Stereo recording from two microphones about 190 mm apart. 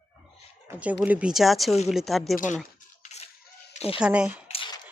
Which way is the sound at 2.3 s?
45° left (ahead or behind).